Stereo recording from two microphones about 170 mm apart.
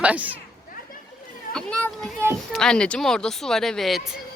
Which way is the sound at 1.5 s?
Centre (ahead or behind).